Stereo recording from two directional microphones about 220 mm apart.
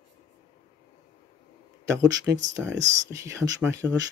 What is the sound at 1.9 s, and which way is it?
Speech, 15° right (ahead or behind).